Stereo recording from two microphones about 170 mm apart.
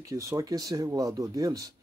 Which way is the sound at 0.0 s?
20° right (ahead or behind).